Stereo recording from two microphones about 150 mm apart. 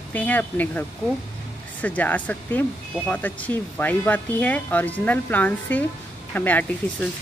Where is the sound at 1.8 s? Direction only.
10° left (ahead or behind).